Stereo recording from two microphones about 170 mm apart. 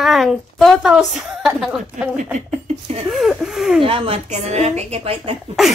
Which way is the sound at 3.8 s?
30° right (ahead or behind).